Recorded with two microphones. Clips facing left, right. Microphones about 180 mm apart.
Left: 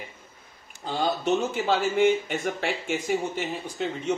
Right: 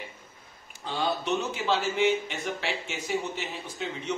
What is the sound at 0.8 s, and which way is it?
Speech, 40° left (ahead or behind).